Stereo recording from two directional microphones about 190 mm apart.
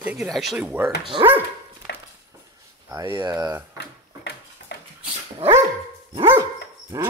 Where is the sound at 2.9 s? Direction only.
15° right (ahead or behind).